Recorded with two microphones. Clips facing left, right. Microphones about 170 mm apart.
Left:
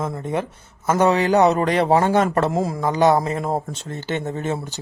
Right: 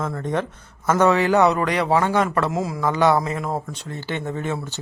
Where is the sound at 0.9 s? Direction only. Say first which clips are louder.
Even; 35° left (ahead or behind).